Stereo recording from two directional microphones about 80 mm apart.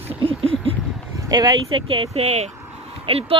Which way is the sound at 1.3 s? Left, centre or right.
Right.